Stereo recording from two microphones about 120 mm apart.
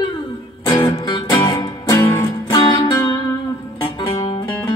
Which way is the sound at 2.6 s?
45° left (ahead or behind).